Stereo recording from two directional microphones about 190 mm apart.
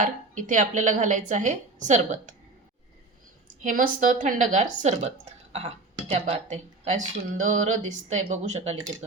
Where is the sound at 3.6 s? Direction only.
45° right (ahead or behind).